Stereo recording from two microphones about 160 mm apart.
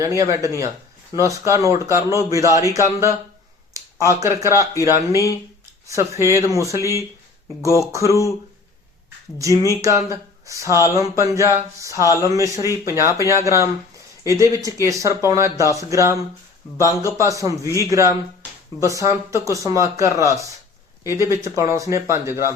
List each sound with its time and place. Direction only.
0.0 s speech: 20° right (ahead or behind)
9.8 s speech: 20° right (ahead or behind)